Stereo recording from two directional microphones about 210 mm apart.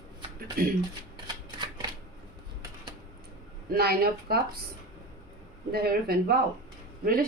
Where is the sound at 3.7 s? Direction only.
45° right (ahead or behind).